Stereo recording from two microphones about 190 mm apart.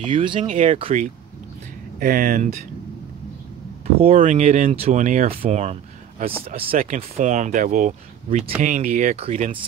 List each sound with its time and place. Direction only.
0.0 s speech: 25° right (ahead or behind)
0.4 s speech: 40° right (ahead or behind)
0.7 s speech: 30° right (ahead or behind)
2.0 s speech: 45° right (ahead or behind)
4.0 s speech: 35° right (ahead or behind)